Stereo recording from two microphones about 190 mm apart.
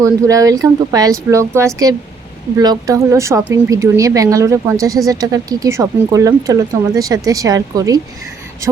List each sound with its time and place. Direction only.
0.0 s speech: 15° right (ahead or behind)